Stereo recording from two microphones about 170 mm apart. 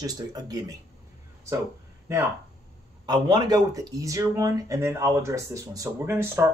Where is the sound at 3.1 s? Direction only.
25° right (ahead or behind).